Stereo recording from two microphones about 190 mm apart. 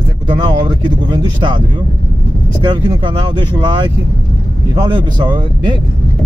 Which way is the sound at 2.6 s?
25° right (ahead or behind).